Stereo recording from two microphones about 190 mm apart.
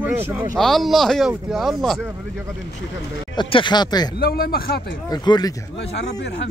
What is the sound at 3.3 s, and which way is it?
Speech, 25° left (ahead or behind).